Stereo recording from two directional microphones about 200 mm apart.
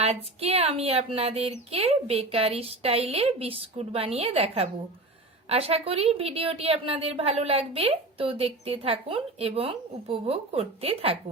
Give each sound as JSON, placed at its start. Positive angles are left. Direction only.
{"t": 0.0, "sound": "a woman's voice", "side_deg": -30}